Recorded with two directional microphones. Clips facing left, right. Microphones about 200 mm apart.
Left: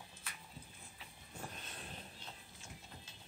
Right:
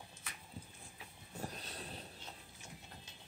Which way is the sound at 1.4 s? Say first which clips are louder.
Right 4 dB; 35° right (ahead or behind).